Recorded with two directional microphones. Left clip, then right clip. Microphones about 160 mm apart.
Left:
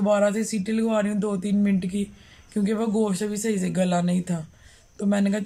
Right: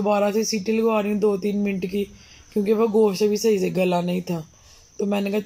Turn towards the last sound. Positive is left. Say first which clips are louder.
# right 2 dB
turn(degrees=-5)  # may be behind; listen again after turning